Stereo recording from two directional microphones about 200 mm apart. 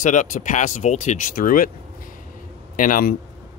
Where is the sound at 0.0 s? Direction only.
40° left (ahead or behind).